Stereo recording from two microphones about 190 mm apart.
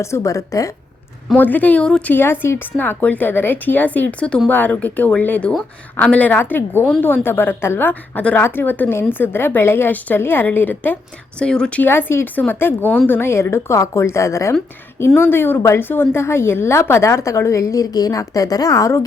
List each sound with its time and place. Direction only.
0.0 s a woman's voice: 15° left (ahead or behind)